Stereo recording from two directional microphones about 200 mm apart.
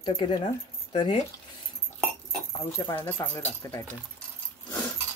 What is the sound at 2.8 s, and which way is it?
Speech, 15° left (ahead or behind).